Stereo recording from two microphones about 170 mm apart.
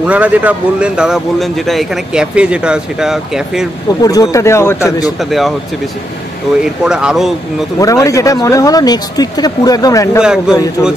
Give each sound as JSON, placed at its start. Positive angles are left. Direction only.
{"t": 0.0, "sound": "a man's voice", "side_deg": -10}
{"t": 4.0, "sound": "speech", "side_deg": 20}
{"t": 6.8, "sound": "a man's voice", "side_deg": -5}
{"t": 7.8, "sound": "speech", "side_deg": 20}
{"t": 10.2, "sound": "a man's voice", "side_deg": -5}